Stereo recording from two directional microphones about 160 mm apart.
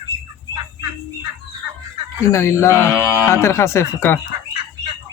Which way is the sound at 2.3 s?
20° left (ahead or behind).